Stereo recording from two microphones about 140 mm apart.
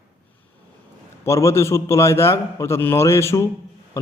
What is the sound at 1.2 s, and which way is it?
A man's voice, 20° left (ahead or behind).